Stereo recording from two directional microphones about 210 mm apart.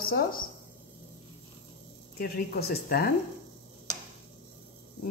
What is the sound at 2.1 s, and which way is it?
Speech, 45° left (ahead or behind).